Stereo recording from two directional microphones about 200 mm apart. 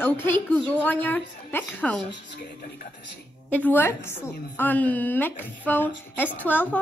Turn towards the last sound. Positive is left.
turn(degrees=10)  # may be behind; listen again after turning